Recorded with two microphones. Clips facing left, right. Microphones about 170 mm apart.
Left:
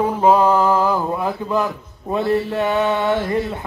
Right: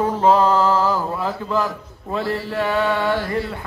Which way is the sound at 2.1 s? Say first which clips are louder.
Left 4 dB; 20° left (ahead or behind).